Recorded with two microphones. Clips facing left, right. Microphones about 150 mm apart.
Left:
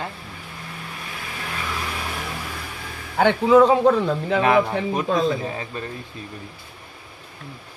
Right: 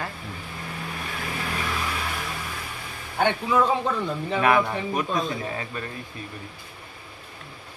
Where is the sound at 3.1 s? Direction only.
90° left.